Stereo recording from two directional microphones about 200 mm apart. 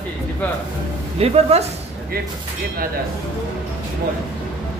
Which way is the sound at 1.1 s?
30° right (ahead or behind).